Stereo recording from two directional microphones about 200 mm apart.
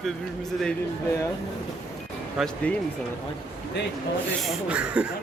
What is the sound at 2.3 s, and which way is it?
Speech, 5° left (ahead or behind).